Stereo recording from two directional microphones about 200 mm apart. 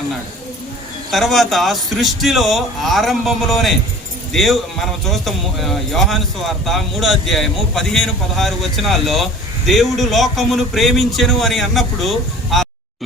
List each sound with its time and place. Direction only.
1.1 s a man's voice: centre (ahead or behind)